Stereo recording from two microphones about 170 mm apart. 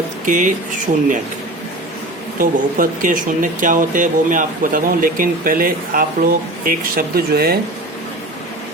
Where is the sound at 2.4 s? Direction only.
55° right (ahead or behind).